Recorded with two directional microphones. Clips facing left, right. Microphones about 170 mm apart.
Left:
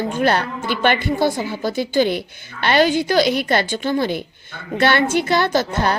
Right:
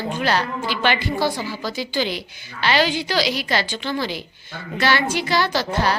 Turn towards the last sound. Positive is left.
turn(degrees=50)  # may be behind; listen again after turning